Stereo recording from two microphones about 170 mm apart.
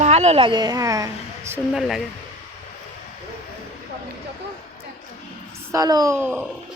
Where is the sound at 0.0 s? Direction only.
40° right (ahead or behind); by 1.5 s 20° right (ahead or behind).